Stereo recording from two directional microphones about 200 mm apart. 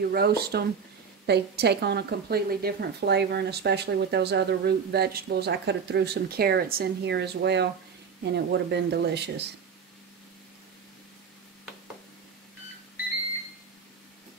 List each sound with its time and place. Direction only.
0.1 s a woman's voice: 50° right (ahead or behind)